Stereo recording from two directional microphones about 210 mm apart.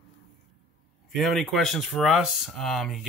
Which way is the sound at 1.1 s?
Centre (ahead or behind).